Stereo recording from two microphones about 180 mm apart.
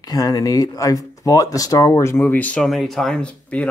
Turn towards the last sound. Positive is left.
turn(degrees=5)  # may be behind; listen again after turning